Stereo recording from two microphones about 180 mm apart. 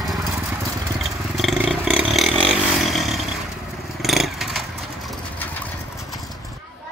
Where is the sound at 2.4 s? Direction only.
Centre (ahead or behind).